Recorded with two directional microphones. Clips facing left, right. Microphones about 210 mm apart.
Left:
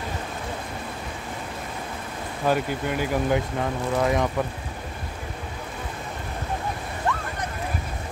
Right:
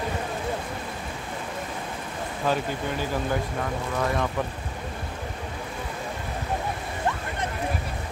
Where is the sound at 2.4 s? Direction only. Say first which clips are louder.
Left 3 dB; 10° left (ahead or behind).